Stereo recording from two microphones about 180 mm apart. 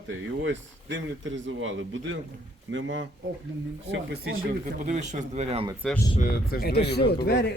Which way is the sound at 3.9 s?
65° right (ahead or behind).